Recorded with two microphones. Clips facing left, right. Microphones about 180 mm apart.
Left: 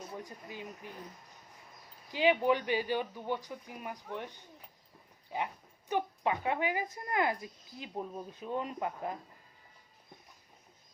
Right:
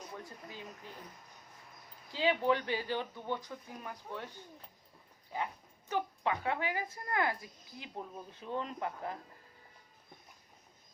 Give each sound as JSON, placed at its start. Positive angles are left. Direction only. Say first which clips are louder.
{"t": 0.1, "sound": "speech", "louder": "left 3 dB", "side_deg": 15}
{"t": 2.1, "sound": "speech", "louder": "left 3 dB", "side_deg": 15}
{"t": 5.3, "sound": "speech", "louder": "left 2 dB", "side_deg": 15}